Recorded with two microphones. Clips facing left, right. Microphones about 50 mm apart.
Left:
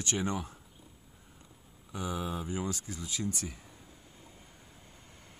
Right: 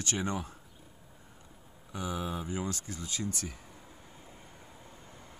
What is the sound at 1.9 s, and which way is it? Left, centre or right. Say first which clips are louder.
Speech: even; centre.